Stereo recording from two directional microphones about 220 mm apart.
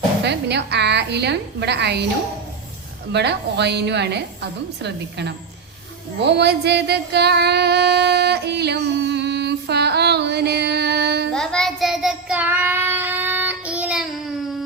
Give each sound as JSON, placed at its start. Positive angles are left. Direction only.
{"t": 0.3, "sound": "a woman's voice", "side_deg": -50}
{"t": 3.1, "sound": "a woman's voice", "side_deg": -50}
{"t": 6.2, "sound": "a sound", "side_deg": -50}
{"t": 11.3, "sound": "child singing", "side_deg": 5}